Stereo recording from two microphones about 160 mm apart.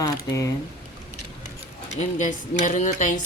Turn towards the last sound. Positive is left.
turn(degrees=50)  # may be behind; listen again after turning